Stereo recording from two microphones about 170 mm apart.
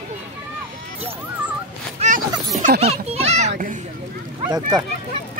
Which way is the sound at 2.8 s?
40° right (ahead or behind).